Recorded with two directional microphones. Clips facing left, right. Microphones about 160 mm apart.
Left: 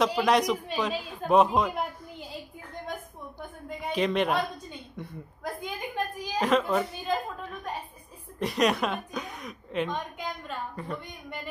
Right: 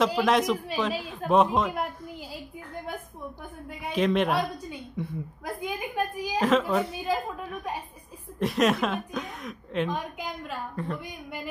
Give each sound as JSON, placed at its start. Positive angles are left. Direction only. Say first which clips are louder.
{"t": 0.0, "sound": "a woman's voice", "louder": "right 1 dB", "side_deg": 0}
{"t": 3.8, "sound": "a woman's voice", "louder": "right 2 dB", "side_deg": 0}